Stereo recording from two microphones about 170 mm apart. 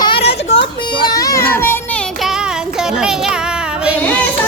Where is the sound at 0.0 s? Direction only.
30° left (ahead or behind).